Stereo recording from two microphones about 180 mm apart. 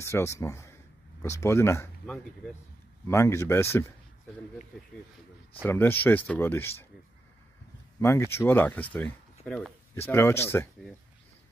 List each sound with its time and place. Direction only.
0.0 s speech: 15° left (ahead or behind)
3.1 s speech: 15° left (ahead or behind)
5.6 s speech: 10° left (ahead or behind)
8.0 s speech: 15° left (ahead or behind)